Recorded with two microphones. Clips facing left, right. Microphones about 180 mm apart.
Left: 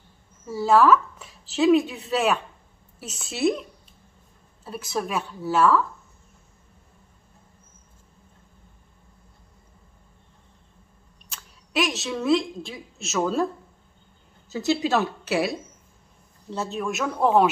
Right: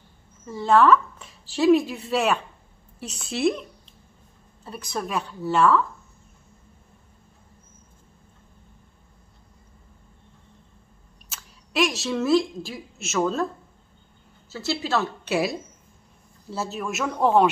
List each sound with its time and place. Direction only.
0.5 s speech: 5° left (ahead or behind)
4.6 s speech: 5° left (ahead or behind)
11.2 s a woman's voice: centre (ahead or behind)
14.5 s a woman's voice: 15° left (ahead or behind)
15.2 s speech: centre (ahead or behind)